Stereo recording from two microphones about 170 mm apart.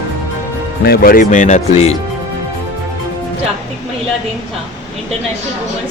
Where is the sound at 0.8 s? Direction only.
60° left (ahead or behind); by 1.9 s 45° left (ahead or behind).